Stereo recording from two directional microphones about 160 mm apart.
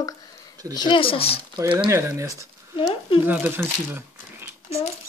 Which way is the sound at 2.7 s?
35° left (ahead or behind).